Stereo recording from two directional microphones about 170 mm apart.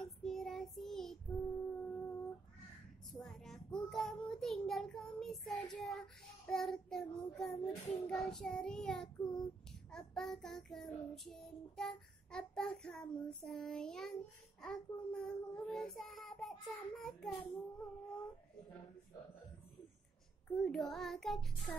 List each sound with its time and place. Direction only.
0.0 s child singing: centre (ahead or behind)
1.3 s humming: 10° left (ahead or behind)
3.1 s child singing: centre (ahead or behind)
9.2 s child singing: 25° left (ahead or behind)
9.8 s child singing: 5° left (ahead or behind)
20.5 s child singing: 5° left (ahead or behind)